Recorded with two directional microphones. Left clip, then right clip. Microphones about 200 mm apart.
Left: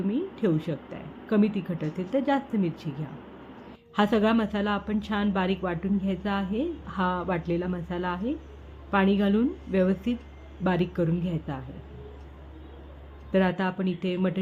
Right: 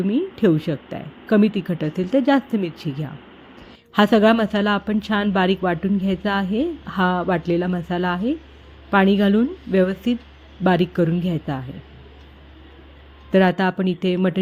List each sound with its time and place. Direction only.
0.1 s speech: 40° right (ahead or behind)
3.9 s speech: 35° right (ahead or behind)
13.3 s speech: 40° right (ahead or behind)